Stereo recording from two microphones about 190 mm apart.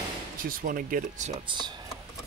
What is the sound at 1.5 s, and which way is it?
Speech, 25° right (ahead or behind).